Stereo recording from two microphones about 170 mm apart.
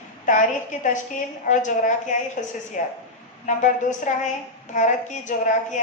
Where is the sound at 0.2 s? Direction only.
50° left (ahead or behind).